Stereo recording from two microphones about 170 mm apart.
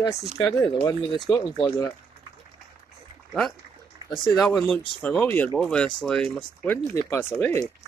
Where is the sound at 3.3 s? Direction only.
Centre (ahead or behind).